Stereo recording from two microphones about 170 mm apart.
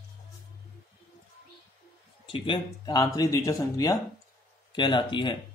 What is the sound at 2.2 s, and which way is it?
Speech, 30° left (ahead or behind).